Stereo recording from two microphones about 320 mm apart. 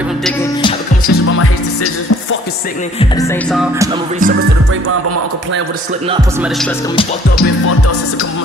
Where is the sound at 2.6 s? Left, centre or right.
Left; by 4.0 s centre.